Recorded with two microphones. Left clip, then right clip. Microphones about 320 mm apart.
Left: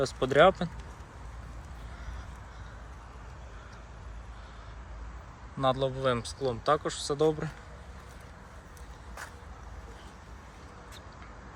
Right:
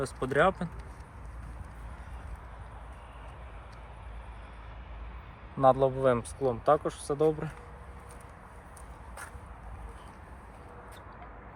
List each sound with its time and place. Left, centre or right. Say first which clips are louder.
0.0 s speech: left 4 dB; centre
5.5 s speech: right 5 dB; centre